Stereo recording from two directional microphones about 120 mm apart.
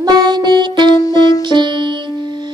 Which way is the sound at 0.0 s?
35° right (ahead or behind).